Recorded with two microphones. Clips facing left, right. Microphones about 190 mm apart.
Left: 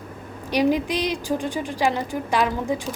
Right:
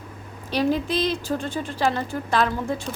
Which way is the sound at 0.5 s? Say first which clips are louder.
Left 2 dB; 15° left (ahead or behind).